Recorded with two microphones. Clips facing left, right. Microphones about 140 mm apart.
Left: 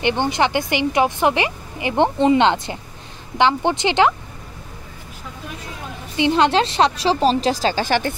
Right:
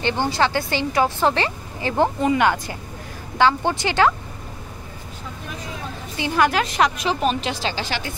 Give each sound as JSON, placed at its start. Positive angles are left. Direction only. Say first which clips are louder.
{"t": 0.0, "sound": "speech", "louder": "left 2 dB", "side_deg": 20}
{"t": 6.1, "sound": "a woman's voice", "louder": "left 4 dB", "side_deg": 20}